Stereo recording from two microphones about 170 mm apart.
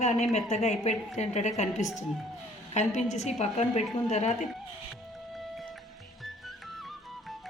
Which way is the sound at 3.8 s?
Centre (ahead or behind).